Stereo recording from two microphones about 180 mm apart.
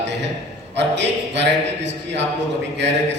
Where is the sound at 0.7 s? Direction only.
75° right (ahead or behind).